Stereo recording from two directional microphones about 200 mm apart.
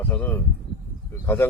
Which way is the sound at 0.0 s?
10° left (ahead or behind).